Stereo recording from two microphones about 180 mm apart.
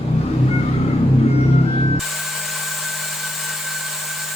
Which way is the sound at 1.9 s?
Centre (ahead or behind).